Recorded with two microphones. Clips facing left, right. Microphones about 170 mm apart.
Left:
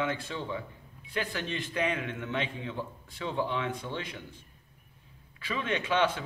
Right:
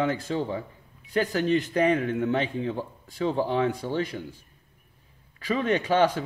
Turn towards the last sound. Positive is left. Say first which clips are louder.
# right 6 dB
turn(degrees=-40)  # may be behind; listen again after turning